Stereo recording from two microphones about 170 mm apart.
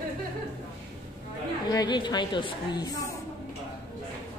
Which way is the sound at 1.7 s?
25° left (ahead or behind).